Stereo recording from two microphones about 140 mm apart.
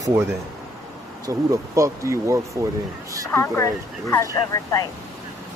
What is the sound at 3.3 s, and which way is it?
Speech, 20° left (ahead or behind).